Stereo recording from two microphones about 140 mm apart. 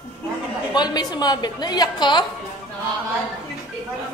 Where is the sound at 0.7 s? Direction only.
30° left (ahead or behind).